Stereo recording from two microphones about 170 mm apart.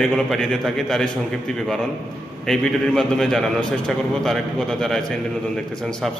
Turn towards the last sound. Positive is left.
turn(degrees=5)  # may be behind; listen again after turning